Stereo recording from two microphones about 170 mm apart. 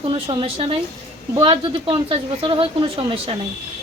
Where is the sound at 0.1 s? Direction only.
30° right (ahead or behind).